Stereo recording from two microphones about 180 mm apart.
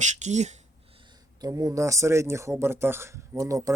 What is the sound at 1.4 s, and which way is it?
Speech, 20° right (ahead or behind).